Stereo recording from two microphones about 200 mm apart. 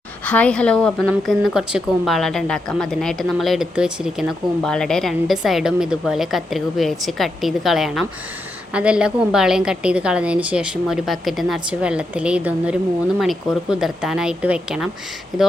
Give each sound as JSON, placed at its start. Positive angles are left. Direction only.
{"t": 0.3, "sound": "a woman's voice", "side_deg": 5}